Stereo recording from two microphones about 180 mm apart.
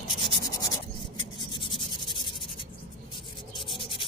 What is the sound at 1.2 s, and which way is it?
Writing, 25° left (ahead or behind).